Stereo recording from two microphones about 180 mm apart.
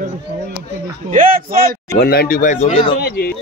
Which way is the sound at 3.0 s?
60° left (ahead or behind).